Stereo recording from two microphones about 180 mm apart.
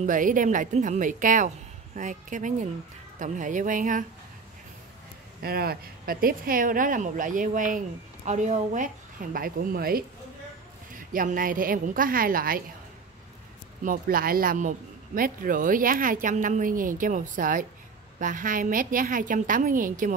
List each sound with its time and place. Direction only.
0.0 s speech: 45° right (ahead or behind)
5.4 s speech: 55° right (ahead or behind)
11.1 s speech: 50° right (ahead or behind)
13.8 s speech: 55° right (ahead or behind)